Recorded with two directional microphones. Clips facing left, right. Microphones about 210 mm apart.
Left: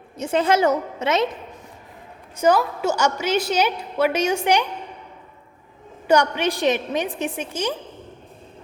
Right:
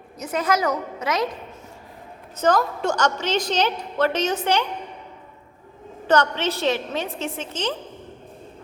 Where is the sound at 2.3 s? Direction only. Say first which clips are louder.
Left 2 dB; 10° left (ahead or behind).